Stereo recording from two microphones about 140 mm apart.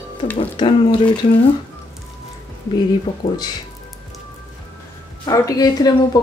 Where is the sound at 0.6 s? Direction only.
35° left (ahead or behind).